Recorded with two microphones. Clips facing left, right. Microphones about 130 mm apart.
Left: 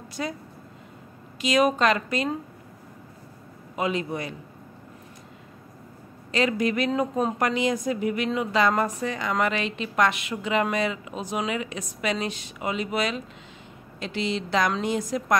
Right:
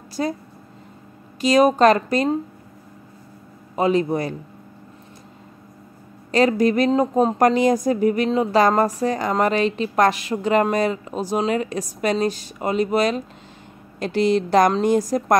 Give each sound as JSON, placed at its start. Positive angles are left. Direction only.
{"t": 0.2, "sound": "speech", "side_deg": -35}
{"t": 1.4, "sound": "speech", "side_deg": -35}
{"t": 3.7, "sound": "speech", "side_deg": -35}
{"t": 6.3, "sound": "a woman's voice", "side_deg": -40}